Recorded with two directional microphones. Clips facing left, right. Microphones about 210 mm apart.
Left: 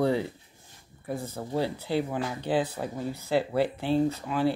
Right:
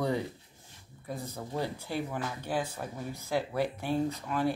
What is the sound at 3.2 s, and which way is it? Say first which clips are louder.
Speech: left 5 dB; 70° left (ahead or behind).